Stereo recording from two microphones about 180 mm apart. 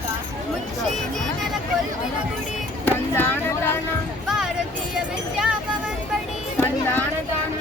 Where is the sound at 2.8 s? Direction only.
10° left (ahead or behind).